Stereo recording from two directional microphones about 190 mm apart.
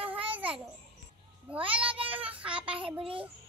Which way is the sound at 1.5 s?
5° right (ahead or behind).